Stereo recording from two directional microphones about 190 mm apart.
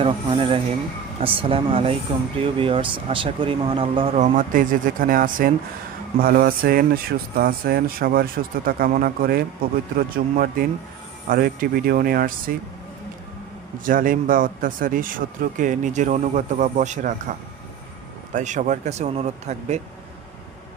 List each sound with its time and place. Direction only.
0.0 s speech: 30° right (ahead or behind); by 12.5 s 50° right (ahead or behind)
13.8 s speech: 45° right (ahead or behind)
18.3 s speech: 40° right (ahead or behind)